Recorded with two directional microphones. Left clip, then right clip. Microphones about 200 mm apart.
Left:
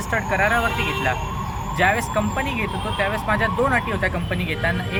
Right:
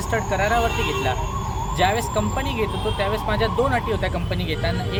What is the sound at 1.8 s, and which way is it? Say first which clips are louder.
Speech: left 2 dB; 20° right (ahead or behind).